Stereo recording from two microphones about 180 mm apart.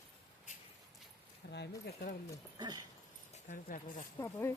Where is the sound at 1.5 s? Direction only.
65° left (ahead or behind).